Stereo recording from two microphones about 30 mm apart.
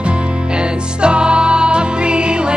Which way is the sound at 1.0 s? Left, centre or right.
Right.